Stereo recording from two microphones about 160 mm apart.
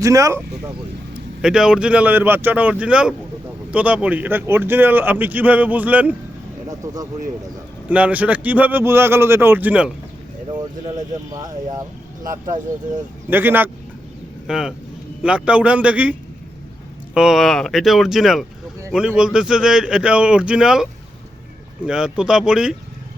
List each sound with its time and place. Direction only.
0.0 s speech: 20° right (ahead or behind)
1.1 s speech: 5° right (ahead or behind)
6.7 s speech: 20° right (ahead or behind)
7.9 s speech: 10° right (ahead or behind)
10.6 s speech: 25° right (ahead or behind)
13.3 s a man's voice: 10° right (ahead or behind)
17.2 s a man's voice: centre (ahead or behind)
21.8 s a man's voice: 5° right (ahead or behind)